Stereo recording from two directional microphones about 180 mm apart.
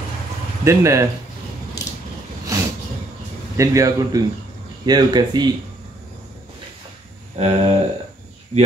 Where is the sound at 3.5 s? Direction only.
20° right (ahead or behind).